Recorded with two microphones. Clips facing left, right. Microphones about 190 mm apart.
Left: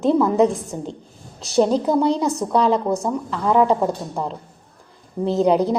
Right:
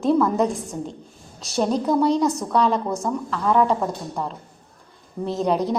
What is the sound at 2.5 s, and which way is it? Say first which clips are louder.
A woman's voice: left 3 dB; 30° left (ahead or behind).